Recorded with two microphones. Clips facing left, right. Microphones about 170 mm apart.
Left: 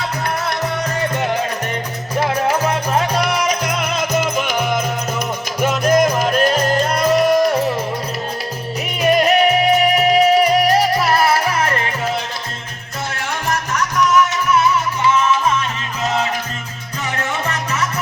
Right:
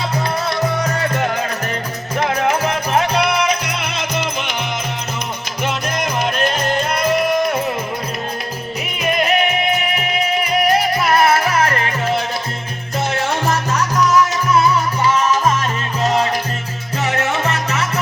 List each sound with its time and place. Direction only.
3.2 s music: 45° left (ahead or behind)
9.0 s music: 40° left (ahead or behind)
13.5 s music: 30° right (ahead or behind)